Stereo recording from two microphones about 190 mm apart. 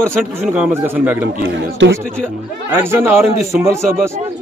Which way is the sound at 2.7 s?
10° right (ahead or behind).